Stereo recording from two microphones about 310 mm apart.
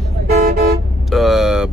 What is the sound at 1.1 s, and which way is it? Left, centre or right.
Vehicle, centre.